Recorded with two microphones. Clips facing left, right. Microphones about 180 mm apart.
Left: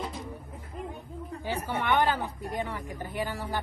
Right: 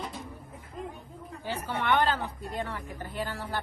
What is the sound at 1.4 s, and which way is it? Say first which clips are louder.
Speech: left 1 dB; 15° left (ahead or behind).